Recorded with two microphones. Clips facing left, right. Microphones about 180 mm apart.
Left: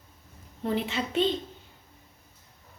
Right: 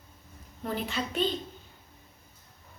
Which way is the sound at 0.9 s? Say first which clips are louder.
Left 2 dB; 25° left (ahead or behind).